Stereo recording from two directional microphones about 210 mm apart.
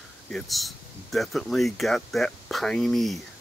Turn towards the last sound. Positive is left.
turn(degrees=0)  # may be behind; listen again after turning